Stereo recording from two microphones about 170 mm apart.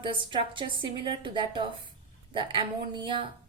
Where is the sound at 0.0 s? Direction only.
30° right (ahead or behind).